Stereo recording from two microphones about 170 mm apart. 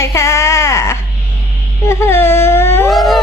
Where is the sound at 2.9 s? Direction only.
Centre (ahead or behind).